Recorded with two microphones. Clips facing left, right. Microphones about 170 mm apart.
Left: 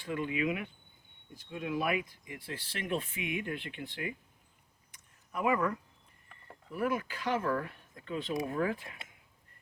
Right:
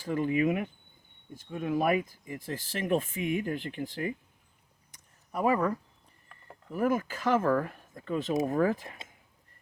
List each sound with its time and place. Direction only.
0.0 s speech: 40° right (ahead or behind)
4.9 s a sound: 35° right (ahead or behind)
6.7 s speech: 45° right (ahead or behind)